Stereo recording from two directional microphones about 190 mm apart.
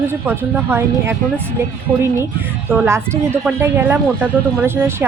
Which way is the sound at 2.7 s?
10° right (ahead or behind).